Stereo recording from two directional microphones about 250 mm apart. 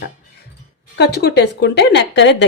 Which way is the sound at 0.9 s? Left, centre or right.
Left.